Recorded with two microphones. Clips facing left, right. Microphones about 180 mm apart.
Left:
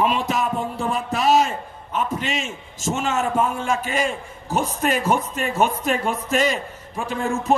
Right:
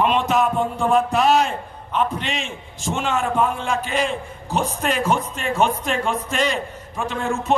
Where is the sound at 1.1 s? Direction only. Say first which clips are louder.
Right 1 dB; 40° left (ahead or behind).